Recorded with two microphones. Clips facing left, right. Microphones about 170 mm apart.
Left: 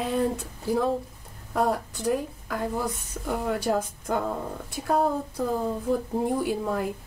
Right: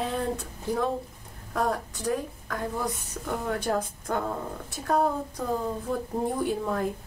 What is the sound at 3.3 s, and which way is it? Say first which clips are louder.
Speech: left 2 dB; 5° left (ahead or behind).